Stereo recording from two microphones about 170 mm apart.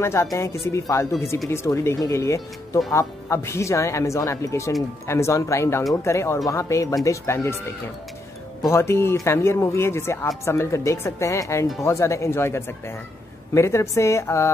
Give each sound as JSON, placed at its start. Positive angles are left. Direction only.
{"t": 0.0, "sound": "speech", "side_deg": 15}
{"t": 8.6, "sound": "speech", "side_deg": 15}